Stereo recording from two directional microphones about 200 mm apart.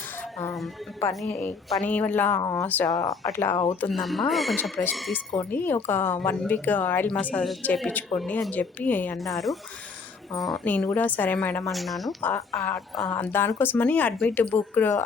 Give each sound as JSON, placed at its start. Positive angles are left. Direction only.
{"t": 1.3, "sound": "speech", "side_deg": 10}
{"t": 3.5, "sound": "speech", "side_deg": 25}
{"t": 3.8, "sound": "speech", "side_deg": 0}
{"t": 12.5, "sound": "speech", "side_deg": 15}